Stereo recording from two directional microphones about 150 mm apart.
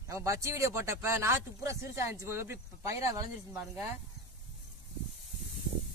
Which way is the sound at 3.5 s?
Centre (ahead or behind).